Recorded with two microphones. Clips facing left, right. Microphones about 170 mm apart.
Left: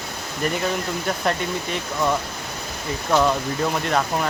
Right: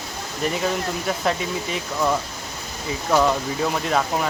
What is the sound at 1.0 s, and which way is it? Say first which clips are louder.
Speech: even; centre (ahead or behind).